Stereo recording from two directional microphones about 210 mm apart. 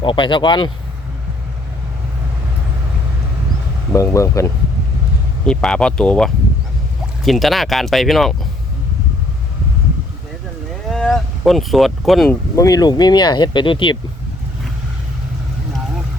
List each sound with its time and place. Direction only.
0.0 s speech: 25° left (ahead or behind)
3.9 s speech: 15° left (ahead or behind)
5.5 s speech: 5° left (ahead or behind)
10.8 s speech: centre (ahead or behind)
12.5 s speech: 15° left (ahead or behind)